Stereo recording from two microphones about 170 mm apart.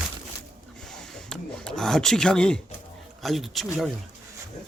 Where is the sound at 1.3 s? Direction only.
5° left (ahead or behind).